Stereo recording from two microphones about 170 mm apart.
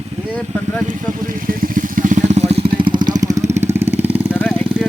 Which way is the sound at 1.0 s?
55° right (ahead or behind).